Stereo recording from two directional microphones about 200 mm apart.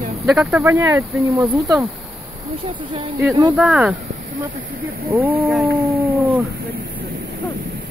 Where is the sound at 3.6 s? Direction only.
5° right (ahead or behind).